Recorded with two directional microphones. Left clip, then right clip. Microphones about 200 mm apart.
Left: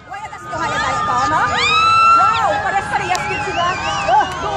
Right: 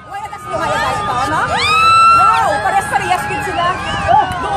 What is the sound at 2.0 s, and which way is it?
Music, 45° right (ahead or behind).